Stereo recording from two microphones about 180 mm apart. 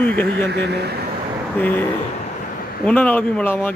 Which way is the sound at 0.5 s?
65° right (ahead or behind).